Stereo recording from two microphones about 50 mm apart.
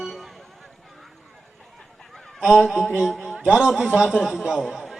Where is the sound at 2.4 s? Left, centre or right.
Centre.